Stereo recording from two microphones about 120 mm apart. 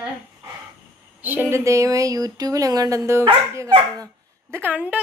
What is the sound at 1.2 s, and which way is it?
Speech, 15° right (ahead or behind).